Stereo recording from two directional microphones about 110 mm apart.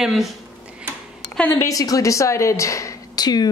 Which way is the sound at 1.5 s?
30° left (ahead or behind).